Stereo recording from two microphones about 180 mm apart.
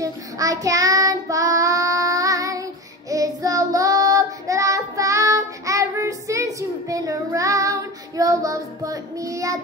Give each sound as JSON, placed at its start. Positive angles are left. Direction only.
{"t": 0.0, "sound": "child singing", "side_deg": -20}